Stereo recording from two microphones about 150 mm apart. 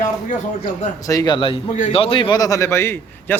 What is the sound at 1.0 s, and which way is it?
A man's voice, 25° left (ahead or behind).